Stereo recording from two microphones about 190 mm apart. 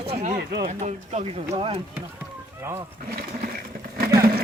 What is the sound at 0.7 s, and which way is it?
Speech, 35° right (ahead or behind).